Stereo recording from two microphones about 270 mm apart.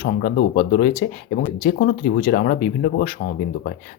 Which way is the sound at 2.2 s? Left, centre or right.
Left.